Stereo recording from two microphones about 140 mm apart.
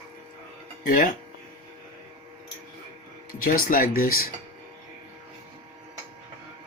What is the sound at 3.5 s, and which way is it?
Speech, 90° left.